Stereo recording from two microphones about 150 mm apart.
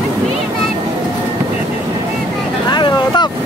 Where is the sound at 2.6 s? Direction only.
30° left (ahead or behind).